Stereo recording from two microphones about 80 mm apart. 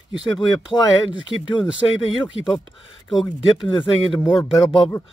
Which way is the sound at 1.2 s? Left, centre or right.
Left.